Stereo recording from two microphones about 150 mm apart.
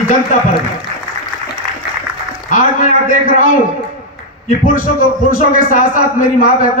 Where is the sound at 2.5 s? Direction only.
60° left (ahead or behind).